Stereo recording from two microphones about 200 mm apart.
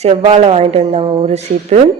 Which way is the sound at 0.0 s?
30° right (ahead or behind).